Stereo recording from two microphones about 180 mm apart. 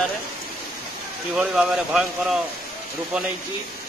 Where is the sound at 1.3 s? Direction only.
5° right (ahead or behind).